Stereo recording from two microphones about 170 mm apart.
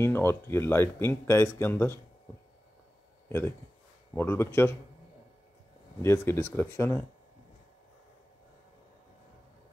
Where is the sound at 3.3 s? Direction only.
15° left (ahead or behind).